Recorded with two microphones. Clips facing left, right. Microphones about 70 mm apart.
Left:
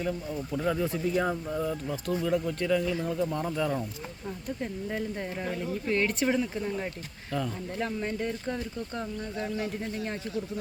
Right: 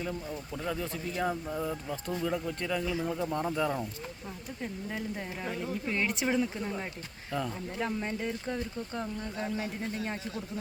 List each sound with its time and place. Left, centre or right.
0.1 s speech: centre
3.2 s speech: centre
5.8 s speech: centre
6.1 s speech: centre
6.4 s speech: centre